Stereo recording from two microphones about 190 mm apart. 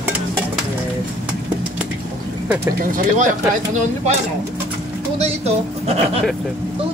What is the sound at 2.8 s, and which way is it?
Speech, 45° right (ahead or behind).